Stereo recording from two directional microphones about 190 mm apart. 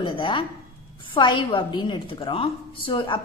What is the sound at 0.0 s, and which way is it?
Speech, 25° left (ahead or behind).